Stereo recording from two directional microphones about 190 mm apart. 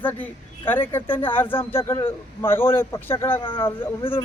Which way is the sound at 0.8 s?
10° left (ahead or behind).